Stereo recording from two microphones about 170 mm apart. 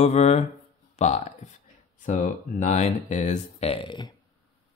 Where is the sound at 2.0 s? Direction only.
50° left (ahead or behind); by 4.1 s 25° left (ahead or behind).